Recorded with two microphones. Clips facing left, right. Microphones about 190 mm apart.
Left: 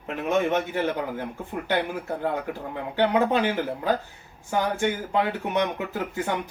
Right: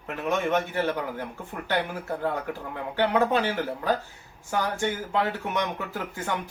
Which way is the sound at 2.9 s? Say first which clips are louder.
Left 1 dB; 15° left (ahead or behind).